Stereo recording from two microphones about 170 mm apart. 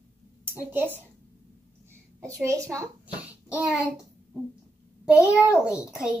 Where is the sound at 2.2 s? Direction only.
15° right (ahead or behind).